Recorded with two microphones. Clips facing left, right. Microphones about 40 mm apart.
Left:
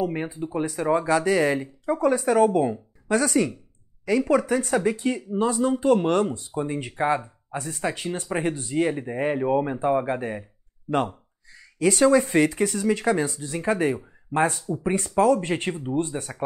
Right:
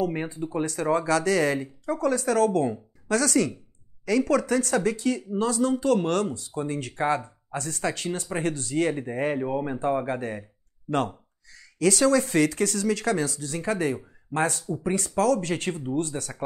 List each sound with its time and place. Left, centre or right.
0.0 s speech: centre